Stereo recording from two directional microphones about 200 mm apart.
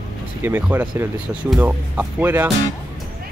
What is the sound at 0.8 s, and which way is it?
Speech, 20° right (ahead or behind).